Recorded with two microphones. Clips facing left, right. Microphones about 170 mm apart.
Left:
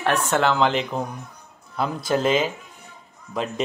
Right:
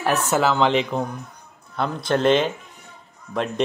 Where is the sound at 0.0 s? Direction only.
5° right (ahead or behind).